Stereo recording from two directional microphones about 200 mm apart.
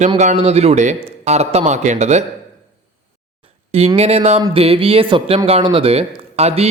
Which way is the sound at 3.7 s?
30° right (ahead or behind).